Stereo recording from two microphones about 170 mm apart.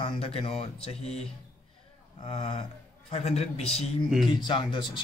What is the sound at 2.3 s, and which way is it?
A man's voice, 30° left (ahead or behind).